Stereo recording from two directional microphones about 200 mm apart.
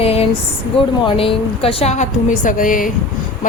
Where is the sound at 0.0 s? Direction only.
30° left (ahead or behind).